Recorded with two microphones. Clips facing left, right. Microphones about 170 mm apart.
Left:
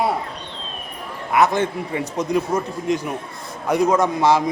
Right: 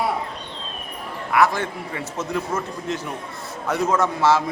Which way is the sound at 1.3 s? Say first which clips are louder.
Left 2 dB; 20° left (ahead or behind).